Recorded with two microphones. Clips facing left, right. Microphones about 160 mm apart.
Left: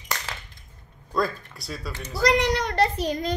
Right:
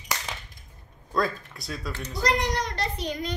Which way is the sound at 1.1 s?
Centre (ahead or behind).